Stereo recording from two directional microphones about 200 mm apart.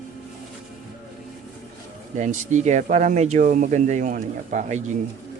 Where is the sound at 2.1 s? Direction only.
35° right (ahead or behind).